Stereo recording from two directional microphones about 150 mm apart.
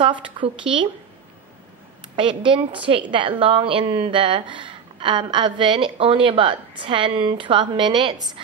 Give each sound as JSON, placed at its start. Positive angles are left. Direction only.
{"t": 0.0, "sound": "a woman's voice", "side_deg": -35}
{"t": 2.1, "sound": "a woman's voice", "side_deg": -35}